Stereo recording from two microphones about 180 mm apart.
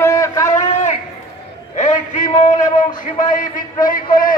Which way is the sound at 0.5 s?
40° left (ahead or behind).